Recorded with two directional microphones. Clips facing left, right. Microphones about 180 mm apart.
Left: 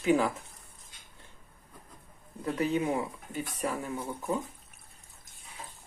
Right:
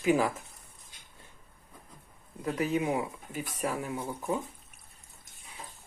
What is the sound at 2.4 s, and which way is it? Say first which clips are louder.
Speech: even; 10° right (ahead or behind).